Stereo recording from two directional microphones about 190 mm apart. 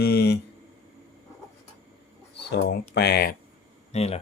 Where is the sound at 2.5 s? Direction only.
60° left (ahead or behind).